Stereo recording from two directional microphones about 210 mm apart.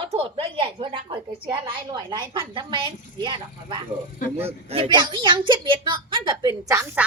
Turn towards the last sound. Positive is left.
turn(degrees=-10)  # may be behind; listen again after turning